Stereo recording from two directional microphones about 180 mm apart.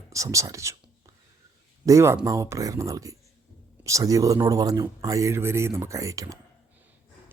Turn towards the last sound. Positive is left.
turn(degrees=-20)  # may be behind; listen again after turning